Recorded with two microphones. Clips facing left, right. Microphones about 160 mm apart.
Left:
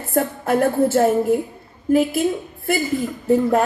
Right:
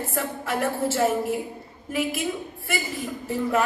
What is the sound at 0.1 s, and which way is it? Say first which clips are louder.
A woman's voice: left 12 dB; 45° left (ahead or behind).